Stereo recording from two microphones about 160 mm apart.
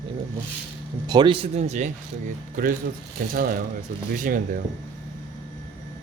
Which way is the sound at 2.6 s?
55° right (ahead or behind).